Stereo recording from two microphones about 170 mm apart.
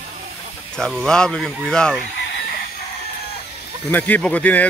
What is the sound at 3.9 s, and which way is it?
Speech, 10° left (ahead or behind).